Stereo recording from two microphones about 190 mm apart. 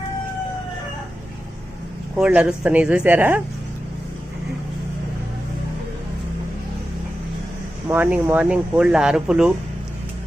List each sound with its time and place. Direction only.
2.1 s speech: 5° right (ahead or behind)
7.9 s speech: 10° right (ahead or behind)